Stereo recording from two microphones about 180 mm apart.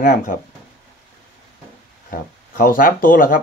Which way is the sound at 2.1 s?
50° left (ahead or behind).